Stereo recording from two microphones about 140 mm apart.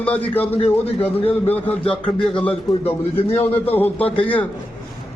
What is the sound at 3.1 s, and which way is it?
Speech, 45° left (ahead or behind).